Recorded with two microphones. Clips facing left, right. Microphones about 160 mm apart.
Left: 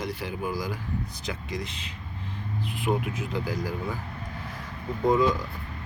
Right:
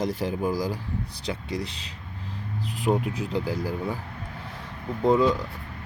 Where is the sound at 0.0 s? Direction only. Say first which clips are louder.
Right 5 dB; 40° right (ahead or behind).